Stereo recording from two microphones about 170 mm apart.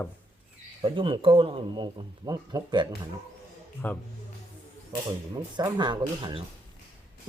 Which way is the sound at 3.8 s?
10° left (ahead or behind).